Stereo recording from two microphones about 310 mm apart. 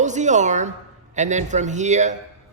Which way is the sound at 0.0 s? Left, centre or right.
Right.